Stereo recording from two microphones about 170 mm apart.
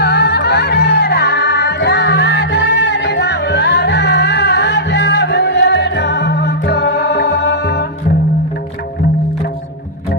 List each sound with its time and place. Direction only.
0.0 s music: 70° left (ahead or behind)